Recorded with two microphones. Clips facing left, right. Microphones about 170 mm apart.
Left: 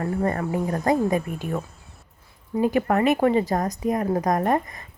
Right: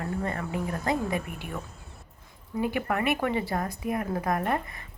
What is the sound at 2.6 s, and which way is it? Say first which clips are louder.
Speech: left 7 dB; 40° left (ahead or behind).